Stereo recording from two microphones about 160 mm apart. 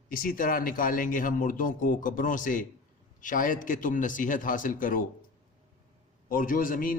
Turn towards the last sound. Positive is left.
turn(degrees=60)  # may be behind; listen again after turning